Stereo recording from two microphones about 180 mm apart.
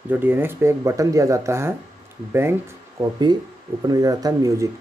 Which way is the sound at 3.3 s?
25° right (ahead or behind).